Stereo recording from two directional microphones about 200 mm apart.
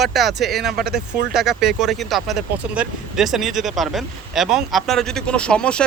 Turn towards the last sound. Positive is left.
turn(degrees=5)  # may be behind; listen again after turning